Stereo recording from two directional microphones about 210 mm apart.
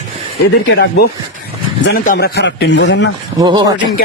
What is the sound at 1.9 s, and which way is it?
A man's voice, 45° left (ahead or behind).